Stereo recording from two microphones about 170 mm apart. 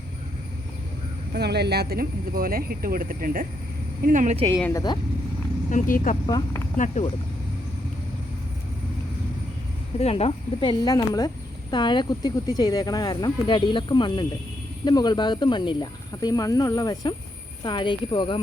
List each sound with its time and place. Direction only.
1.3 s speech: 75° right (ahead or behind); by 4.4 s 50° right (ahead or behind)
4.7 s speech: 25° left (ahead or behind)
5.7 s speech: 50° left (ahead or behind)
6.2 s speech: 25° left (ahead or behind)
6.7 s speech: 50° left (ahead or behind)
10.0 s speech: 35° left (ahead or behind)